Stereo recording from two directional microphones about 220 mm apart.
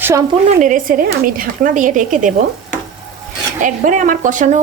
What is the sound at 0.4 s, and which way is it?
Speech, 35° right (ahead or behind).